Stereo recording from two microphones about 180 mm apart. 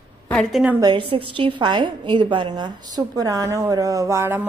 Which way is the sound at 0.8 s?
25° right (ahead or behind).